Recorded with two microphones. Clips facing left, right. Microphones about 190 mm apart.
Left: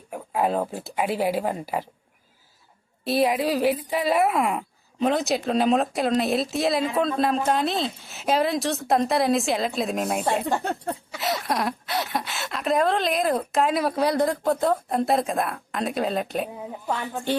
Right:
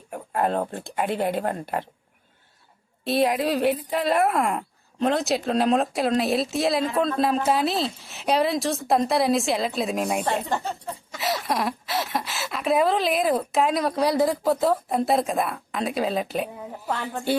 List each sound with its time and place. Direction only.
0.1 s speech: centre (ahead or behind)
3.0 s speech: centre (ahead or behind)
10.2 s speech: 10° left (ahead or behind)
10.6 s speech: 60° left (ahead or behind)
11.1 s speech: centre (ahead or behind)